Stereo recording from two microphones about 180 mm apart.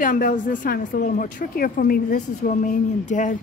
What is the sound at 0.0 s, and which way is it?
Speech, 50° left (ahead or behind).